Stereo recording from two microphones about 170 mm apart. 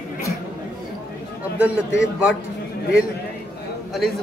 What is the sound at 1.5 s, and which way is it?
Speech, 5° right (ahead or behind).